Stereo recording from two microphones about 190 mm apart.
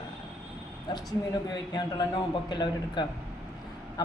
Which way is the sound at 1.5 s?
20° left (ahead or behind).